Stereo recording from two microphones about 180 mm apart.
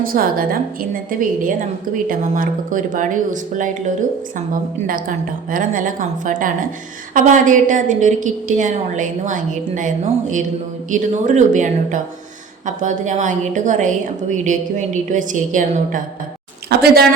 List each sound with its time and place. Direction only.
0.0 s a woman's voice: 55° right (ahead or behind)
4.9 s a woman's voice: 50° right (ahead or behind)
16.6 s a woman's voice: 60° right (ahead or behind)